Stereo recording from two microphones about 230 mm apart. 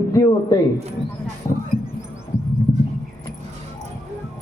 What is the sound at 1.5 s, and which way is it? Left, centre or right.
Speech, centre.